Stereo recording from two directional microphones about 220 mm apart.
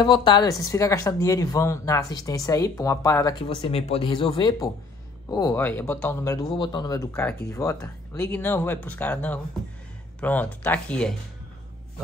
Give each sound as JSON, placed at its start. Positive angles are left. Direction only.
{"t": 0.0, "sound": "speech", "side_deg": 20}
{"t": 3.4, "sound": "speech", "side_deg": 25}